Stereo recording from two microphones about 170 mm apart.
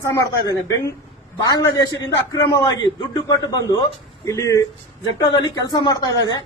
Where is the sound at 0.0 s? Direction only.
20° left (ahead or behind).